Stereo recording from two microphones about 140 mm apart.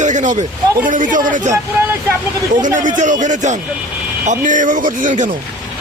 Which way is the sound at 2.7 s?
65° right (ahead or behind).